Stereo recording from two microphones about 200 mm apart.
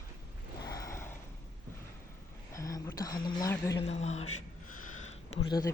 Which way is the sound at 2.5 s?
15° left (ahead or behind).